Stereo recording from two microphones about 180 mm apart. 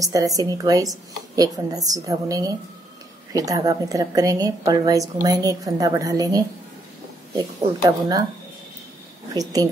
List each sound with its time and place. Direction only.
0.0 s a woman's voice: 20° right (ahead or behind)
7.8 s a woman's voice: 20° right (ahead or behind)
9.3 s a woman's voice: 20° right (ahead or behind)